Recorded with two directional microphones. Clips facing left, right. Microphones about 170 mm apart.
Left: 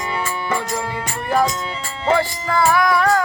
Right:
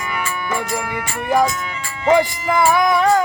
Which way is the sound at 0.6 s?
20° left (ahead or behind).